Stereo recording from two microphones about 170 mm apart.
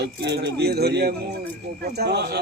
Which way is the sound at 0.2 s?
80° right.